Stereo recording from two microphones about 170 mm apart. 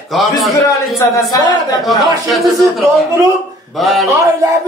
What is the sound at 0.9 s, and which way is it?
Speech, 20° left (ahead or behind).